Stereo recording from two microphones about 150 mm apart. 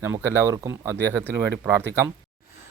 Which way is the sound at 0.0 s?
15° right (ahead or behind).